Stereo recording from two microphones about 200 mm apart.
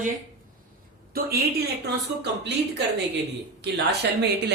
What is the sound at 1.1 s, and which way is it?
Speech, 50° right (ahead or behind).